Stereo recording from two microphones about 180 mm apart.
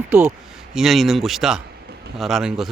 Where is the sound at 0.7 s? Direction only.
Centre (ahead or behind).